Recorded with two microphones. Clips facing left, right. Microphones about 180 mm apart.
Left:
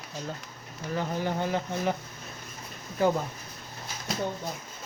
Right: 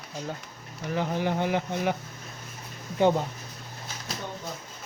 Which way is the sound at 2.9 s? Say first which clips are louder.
Right 3 dB; 25° right (ahead or behind).